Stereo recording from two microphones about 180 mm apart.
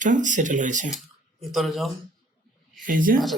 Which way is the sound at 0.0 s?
45° right (ahead or behind).